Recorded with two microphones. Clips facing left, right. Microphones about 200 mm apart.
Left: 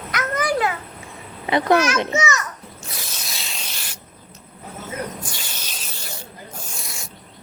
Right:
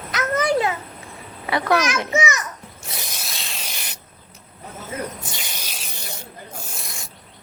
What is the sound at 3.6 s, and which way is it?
Spray, 20° right (ahead or behind).